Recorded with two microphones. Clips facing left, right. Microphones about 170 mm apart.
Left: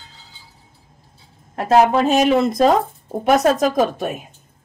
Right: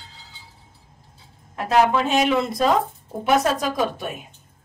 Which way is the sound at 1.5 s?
35° left (ahead or behind).